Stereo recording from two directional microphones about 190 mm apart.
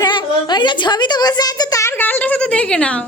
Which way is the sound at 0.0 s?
25° left (ahead or behind).